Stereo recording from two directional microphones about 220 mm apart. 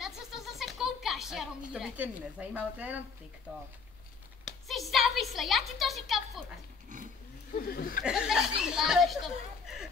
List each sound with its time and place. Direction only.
0.0 s a sound: centre (ahead or behind)
4.5 s speech: centre (ahead or behind)
7.5 s speech: 40° left (ahead or behind)
8.0 s speech: 5° right (ahead or behind)